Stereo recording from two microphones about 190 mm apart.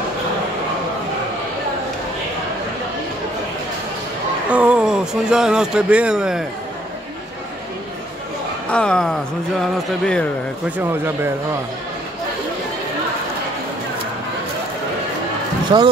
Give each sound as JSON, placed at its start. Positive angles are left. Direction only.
{"t": 4.5, "sound": "speech", "side_deg": -5}
{"t": 8.7, "sound": "speech", "side_deg": 5}
{"t": 10.8, "sound": "speech", "side_deg": -10}
{"t": 15.7, "sound": "speech", "side_deg": -20}